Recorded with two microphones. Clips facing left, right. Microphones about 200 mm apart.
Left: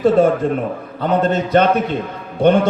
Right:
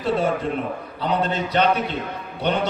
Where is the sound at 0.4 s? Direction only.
50° left (ahead or behind).